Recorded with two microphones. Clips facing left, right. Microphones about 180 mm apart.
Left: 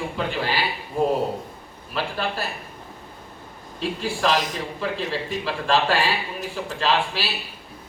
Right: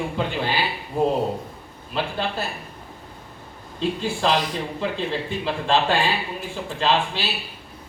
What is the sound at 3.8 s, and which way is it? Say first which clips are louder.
A man's voice: right 1 dB; 25° right (ahead or behind).